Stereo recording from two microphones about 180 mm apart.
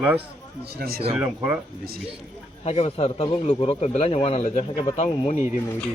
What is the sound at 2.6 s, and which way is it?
A man's voice, 35° left (ahead or behind).